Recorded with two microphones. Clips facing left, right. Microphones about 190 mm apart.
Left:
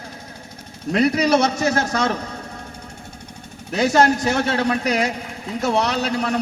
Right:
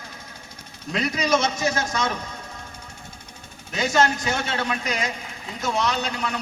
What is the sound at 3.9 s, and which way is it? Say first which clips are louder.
Speech: left 4 dB; 40° left (ahead or behind).